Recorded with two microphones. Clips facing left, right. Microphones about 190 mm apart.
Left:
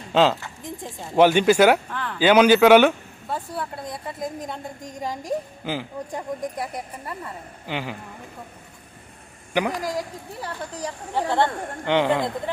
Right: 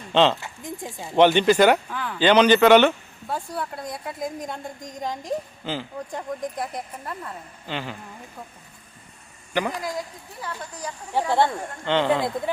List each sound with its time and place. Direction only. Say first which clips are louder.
0.1 s a woman's voice: even; 5° left (ahead or behind)
1.9 s speech: even; 5° right (ahead or behind)
2.1 s speech: left 1 dB; 10° left (ahead or behind)
9.5 s a man's voice: left 2 dB; 15° left (ahead or behind)
11.1 s speech: right 1 dB; 10° right (ahead or behind)
11.9 s speech: left 1 dB; 15° left (ahead or behind)